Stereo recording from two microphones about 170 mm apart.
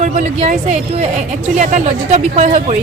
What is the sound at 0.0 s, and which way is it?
A woman's voice, 45° right (ahead or behind).